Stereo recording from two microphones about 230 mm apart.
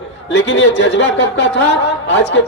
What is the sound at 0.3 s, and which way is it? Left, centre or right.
Speech, left.